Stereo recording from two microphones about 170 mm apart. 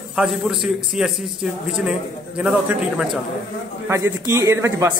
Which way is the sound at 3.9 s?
15° right (ahead or behind).